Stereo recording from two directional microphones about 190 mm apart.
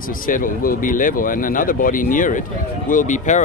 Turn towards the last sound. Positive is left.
turn(degrees=40)  # may be behind; listen again after turning